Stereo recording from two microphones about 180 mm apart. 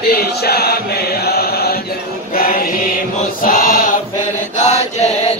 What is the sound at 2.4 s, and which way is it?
Mantra, 50° left (ahead or behind).